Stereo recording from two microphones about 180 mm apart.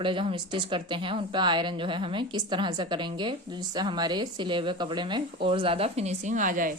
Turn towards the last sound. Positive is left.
turn(degrees=-45)  # may be behind; listen again after turning